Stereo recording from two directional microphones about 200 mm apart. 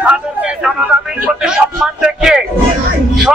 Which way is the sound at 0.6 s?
5° right (ahead or behind).